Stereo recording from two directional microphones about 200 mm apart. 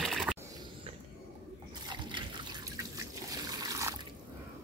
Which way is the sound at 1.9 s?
25° right (ahead or behind).